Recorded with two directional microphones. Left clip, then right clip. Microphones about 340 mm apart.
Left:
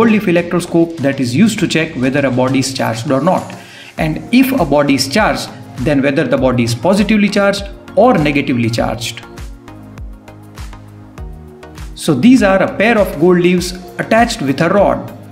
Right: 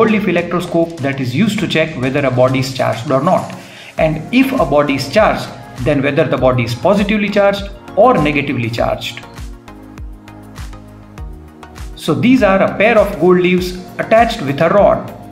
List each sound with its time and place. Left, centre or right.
0.0 s speech: centre
12.0 s speech: centre